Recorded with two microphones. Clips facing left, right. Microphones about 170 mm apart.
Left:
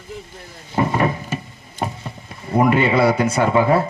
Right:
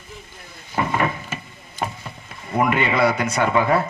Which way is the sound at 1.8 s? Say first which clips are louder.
Left 2 dB; 30° left (ahead or behind).